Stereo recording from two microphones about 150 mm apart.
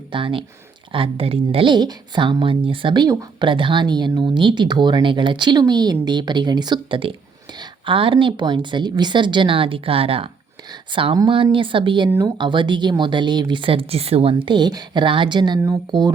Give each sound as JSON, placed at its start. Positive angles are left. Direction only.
{"t": 0.1, "sound": "speech", "side_deg": -35}